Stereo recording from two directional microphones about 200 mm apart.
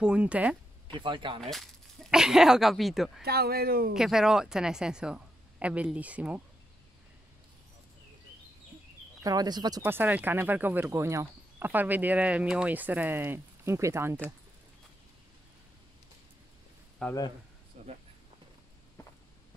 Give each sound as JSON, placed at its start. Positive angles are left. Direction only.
{"t": 0.0, "sound": "a woman's voice", "side_deg": -5}
{"t": 0.9, "sound": "speech", "side_deg": -25}
{"t": 1.5, "sound": "speech", "side_deg": 0}
{"t": 3.2, "sound": "speech", "side_deg": -50}
{"t": 3.9, "sound": "a woman's voice", "side_deg": 0}
{"t": 9.2, "sound": "speech", "side_deg": -20}
{"t": 9.8, "sound": "speech", "side_deg": -10}
{"t": 17.0, "sound": "a woman's voice", "side_deg": 5}
{"t": 17.8, "sound": "a sound", "side_deg": -30}